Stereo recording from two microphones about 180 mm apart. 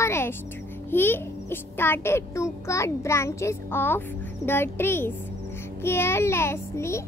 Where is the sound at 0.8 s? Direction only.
10° left (ahead or behind).